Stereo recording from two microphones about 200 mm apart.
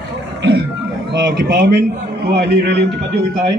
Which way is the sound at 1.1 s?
60° right (ahead or behind).